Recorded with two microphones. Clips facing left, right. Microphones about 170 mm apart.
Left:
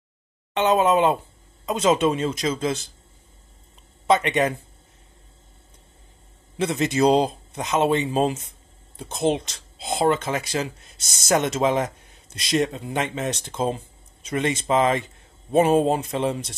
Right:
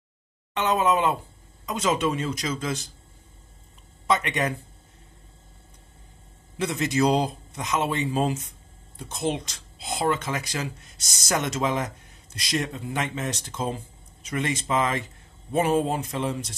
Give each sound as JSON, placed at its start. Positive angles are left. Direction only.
{"t": 0.6, "sound": "speech", "side_deg": 25}
{"t": 4.1, "sound": "speech", "side_deg": 25}
{"t": 6.6, "sound": "speech", "side_deg": 25}